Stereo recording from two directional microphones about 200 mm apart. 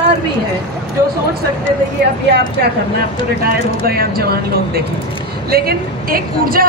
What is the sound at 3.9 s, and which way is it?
A woman's voice, 50° right (ahead or behind).